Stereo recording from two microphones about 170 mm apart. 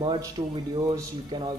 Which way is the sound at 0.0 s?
30° right (ahead or behind).